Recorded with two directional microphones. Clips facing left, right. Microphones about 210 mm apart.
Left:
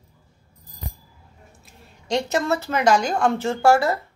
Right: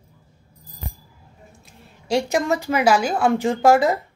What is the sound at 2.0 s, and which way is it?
A woman's voice, 10° right (ahead or behind).